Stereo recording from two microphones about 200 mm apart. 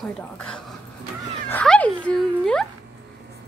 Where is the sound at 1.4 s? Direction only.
5° left (ahead or behind).